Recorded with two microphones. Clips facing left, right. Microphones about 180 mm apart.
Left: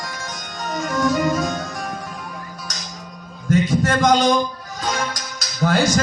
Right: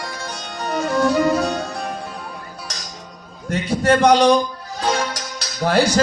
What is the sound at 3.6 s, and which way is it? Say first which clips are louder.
Speech: right 6 dB; 30° right (ahead or behind).